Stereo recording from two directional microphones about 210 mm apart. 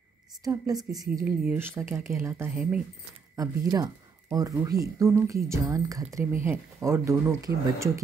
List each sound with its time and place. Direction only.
0.4 s speech: 15° right (ahead or behind)
3.3 s speech: 15° right (ahead or behind)